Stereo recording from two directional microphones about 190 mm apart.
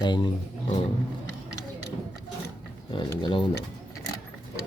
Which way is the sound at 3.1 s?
25° left (ahead or behind).